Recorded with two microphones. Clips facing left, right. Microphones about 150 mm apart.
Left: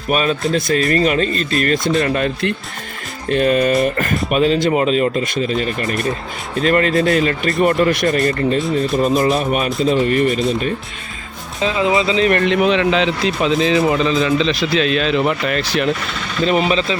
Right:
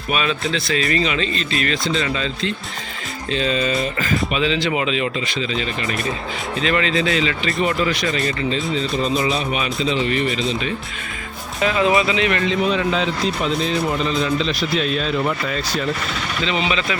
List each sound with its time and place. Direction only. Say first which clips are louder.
0.1 s speech: left 5 dB; 45° left (ahead or behind)
11.6 s speech: left 1 dB; 20° left (ahead or behind)
12.3 s a man's voice: left 5 dB; 60° left (ahead or behind)
16.4 s speech: left 7 dB; 50° left (ahead or behind)